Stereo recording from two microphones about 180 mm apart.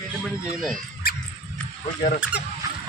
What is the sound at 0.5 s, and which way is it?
Speech, centre (ahead or behind).